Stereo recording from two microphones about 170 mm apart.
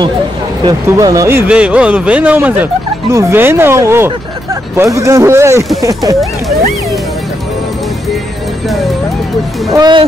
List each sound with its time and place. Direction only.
0.7 s speech: 20° right (ahead or behind)
1.5 s speech: 5° right (ahead or behind)
9.7 s speech: 25° right (ahead or behind)